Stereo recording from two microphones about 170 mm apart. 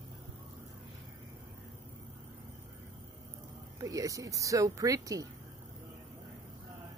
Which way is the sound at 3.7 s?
20° right (ahead or behind).